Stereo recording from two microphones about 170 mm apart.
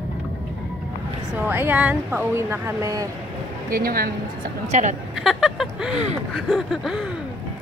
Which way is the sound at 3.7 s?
60° right (ahead or behind).